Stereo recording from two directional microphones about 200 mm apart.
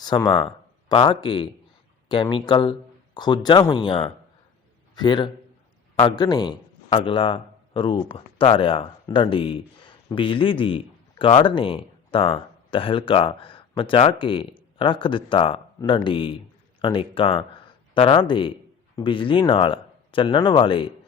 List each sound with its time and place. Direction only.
0.0 s a man's voice: 20° left (ahead or behind)